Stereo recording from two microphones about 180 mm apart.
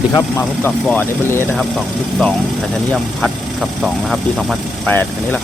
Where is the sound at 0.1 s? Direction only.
15° left (ahead or behind).